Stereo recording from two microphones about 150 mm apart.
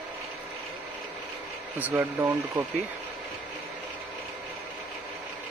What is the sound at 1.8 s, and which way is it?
Speech, 20° right (ahead or behind).